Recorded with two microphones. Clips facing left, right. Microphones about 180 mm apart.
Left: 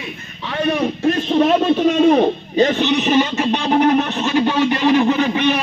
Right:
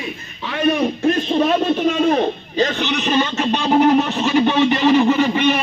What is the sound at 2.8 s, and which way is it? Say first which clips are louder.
Speech: left 3 dB; 5° left (ahead or behind).